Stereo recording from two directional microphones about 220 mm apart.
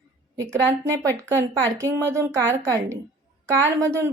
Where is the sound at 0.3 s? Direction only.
10° right (ahead or behind).